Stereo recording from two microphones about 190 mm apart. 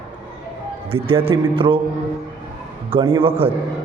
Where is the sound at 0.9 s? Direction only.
30° right (ahead or behind).